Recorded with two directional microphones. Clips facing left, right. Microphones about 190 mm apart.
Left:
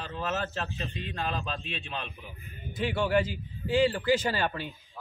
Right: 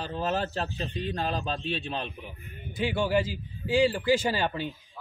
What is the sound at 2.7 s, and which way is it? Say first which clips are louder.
A man's voice: right 1 dB; 10° right (ahead or behind).